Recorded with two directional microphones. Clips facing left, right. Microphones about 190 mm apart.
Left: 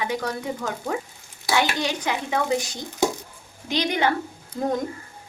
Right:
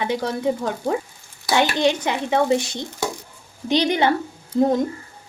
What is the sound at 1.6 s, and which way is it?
Speech, 25° right (ahead or behind).